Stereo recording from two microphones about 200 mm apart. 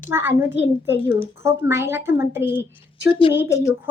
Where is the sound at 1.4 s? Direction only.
10° right (ahead or behind).